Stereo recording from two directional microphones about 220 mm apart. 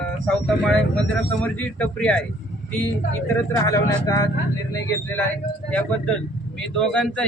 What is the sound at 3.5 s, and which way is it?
Speech, 15° left (ahead or behind).